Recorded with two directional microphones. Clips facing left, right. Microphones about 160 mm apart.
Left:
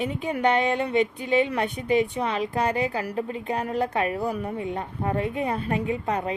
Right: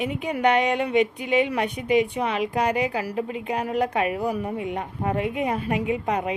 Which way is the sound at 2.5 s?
15° right (ahead or behind).